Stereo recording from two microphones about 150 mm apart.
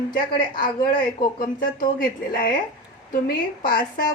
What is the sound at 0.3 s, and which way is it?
Speech, 70° left (ahead or behind).